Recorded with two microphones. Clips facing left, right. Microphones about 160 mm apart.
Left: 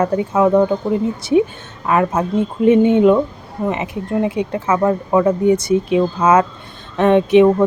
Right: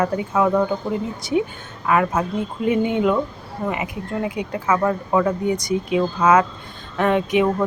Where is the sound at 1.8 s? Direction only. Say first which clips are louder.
Left 3 dB; 25° left (ahead or behind).